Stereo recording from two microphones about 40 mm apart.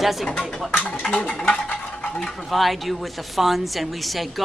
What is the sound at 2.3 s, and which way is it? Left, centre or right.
A woman's voice, centre.